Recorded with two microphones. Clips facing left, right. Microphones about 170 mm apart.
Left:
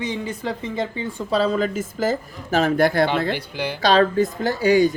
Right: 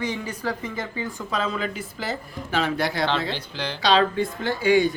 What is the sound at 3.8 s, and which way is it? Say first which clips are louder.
Speech: left 4 dB; 45° left (ahead or behind).